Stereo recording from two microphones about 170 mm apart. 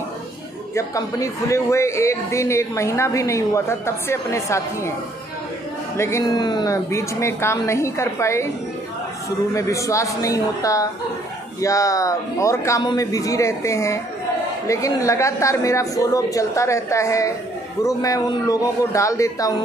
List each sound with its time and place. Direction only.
0.7 s a man's voice: 20° left (ahead or behind)
5.9 s a man's voice: 15° left (ahead or behind)
9.5 s a woman's voice: 20° left (ahead or behind)